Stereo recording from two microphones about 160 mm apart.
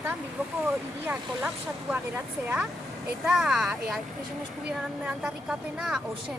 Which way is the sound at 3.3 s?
5° right (ahead or behind).